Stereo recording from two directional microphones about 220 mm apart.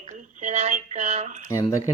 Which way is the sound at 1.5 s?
15° left (ahead or behind).